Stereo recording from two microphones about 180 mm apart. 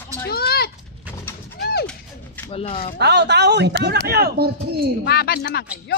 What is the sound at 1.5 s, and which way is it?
Pigeon, 60° left (ahead or behind).